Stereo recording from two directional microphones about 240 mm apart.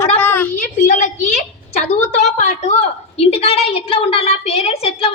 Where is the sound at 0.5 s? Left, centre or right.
Left.